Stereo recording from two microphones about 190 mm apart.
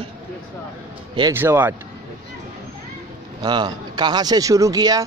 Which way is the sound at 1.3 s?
10° right (ahead or behind).